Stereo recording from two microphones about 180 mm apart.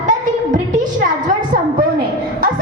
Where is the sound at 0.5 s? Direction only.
45° right (ahead or behind).